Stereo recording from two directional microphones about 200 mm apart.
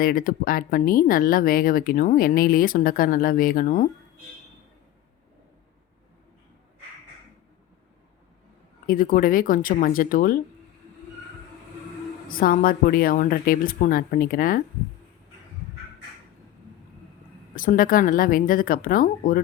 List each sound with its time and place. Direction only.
0.0 s speech: 45° left (ahead or behind)
8.9 s speech: 45° left (ahead or behind)
12.3 s speech: 45° left (ahead or behind)
17.5 s speech: 45° left (ahead or behind)